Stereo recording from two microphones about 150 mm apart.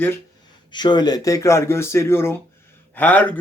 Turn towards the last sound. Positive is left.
turn(degrees=10)  # may be behind; listen again after turning